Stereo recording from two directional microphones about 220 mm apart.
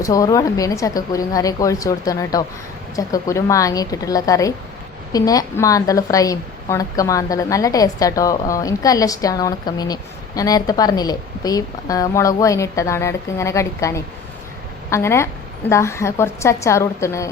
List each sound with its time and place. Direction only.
0.0 s a woman's voice: 15° left (ahead or behind)